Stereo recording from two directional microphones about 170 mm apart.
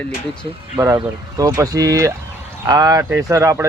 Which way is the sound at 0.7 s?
15° right (ahead or behind).